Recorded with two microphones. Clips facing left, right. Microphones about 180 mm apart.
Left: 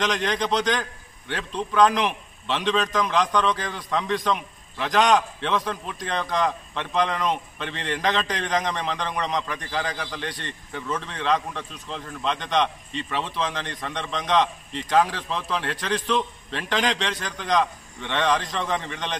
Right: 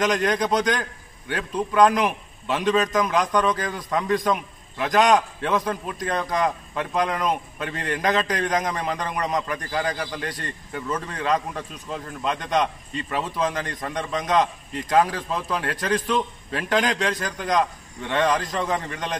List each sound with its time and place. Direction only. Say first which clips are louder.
0.0 s a man's voice: right 3 dB; 10° right (ahead or behind)
16.9 s a man's voice: right 3 dB; 45° right (ahead or behind)
17.2 s a man's voice: right 1 dB; 10° right (ahead or behind)